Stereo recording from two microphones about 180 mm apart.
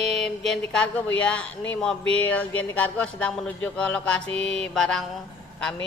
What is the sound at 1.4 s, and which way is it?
Speech, 90° left.